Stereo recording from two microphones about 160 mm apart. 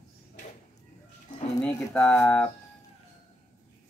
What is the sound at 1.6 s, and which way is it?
Speech, 5° left (ahead or behind).